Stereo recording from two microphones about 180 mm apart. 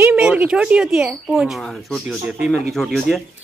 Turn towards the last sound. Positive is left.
turn(degrees=0)  # may be behind; listen again after turning